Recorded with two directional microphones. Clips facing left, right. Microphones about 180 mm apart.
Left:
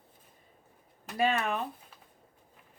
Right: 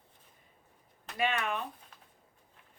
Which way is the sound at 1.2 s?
35° left (ahead or behind).